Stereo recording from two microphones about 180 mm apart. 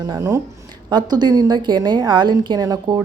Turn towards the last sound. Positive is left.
turn(degrees=-20)  # may be behind; listen again after turning